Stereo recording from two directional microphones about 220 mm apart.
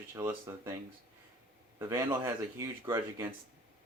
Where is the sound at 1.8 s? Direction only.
15° right (ahead or behind).